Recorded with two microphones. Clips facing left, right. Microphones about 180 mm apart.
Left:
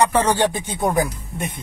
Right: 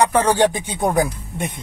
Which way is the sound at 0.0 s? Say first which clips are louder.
Right 2 dB; 10° right (ahead or behind).